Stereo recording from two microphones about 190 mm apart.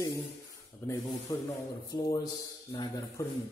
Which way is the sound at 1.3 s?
15° left (ahead or behind).